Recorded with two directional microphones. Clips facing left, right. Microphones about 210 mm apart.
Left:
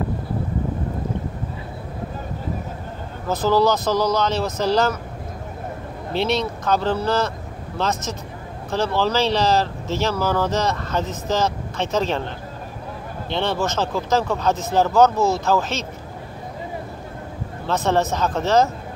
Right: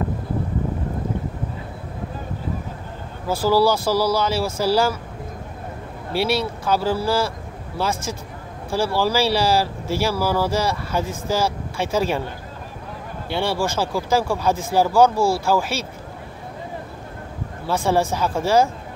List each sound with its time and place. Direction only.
3.3 s speech: 10° right (ahead or behind)
6.1 s speech: 10° right (ahead or behind)
13.3 s speech: 10° right (ahead or behind)
17.6 s speech: 10° right (ahead or behind)